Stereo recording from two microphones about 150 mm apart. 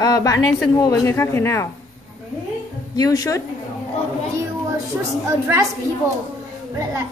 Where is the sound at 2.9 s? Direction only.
25° left (ahead or behind).